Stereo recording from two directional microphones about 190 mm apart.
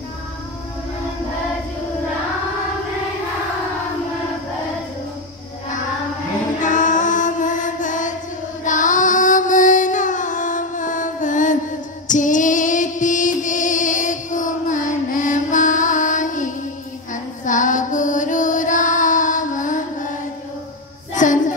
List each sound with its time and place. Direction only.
6.6 s music: 40° left (ahead or behind)
8.6 s carnatic music: 40° left (ahead or behind)
12.1 s female singing: 40° left (ahead or behind)
21.1 s child singing: 40° left (ahead or behind)